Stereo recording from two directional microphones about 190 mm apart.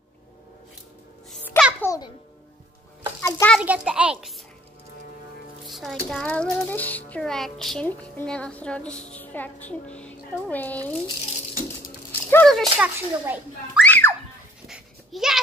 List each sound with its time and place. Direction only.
1.3 s music: 10° left (ahead or behind)
3.2 s a sound: 15° left (ahead or behind)
3.5 s a child's voice: 5° right (ahead or behind)
5.7 s music: centre (ahead or behind)
12.1 s rattle: 10° left (ahead or behind)
12.7 s a child's voice: 5° right (ahead or behind)
13.8 s music: 10° left (ahead or behind)
14.7 s a sound: centre (ahead or behind)